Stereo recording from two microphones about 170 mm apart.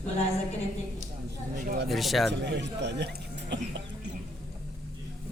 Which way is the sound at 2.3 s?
90° right.